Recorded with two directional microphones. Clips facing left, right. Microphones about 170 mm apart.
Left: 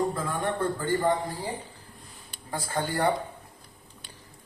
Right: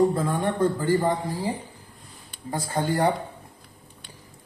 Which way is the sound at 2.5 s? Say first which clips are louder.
Right 4 dB; 20° right (ahead or behind).